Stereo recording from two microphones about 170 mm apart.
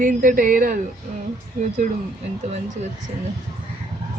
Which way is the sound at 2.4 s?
40° right (ahead or behind).